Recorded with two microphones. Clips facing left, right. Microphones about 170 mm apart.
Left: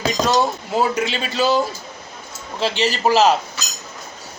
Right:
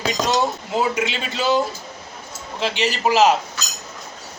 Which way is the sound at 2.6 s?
35° left (ahead or behind).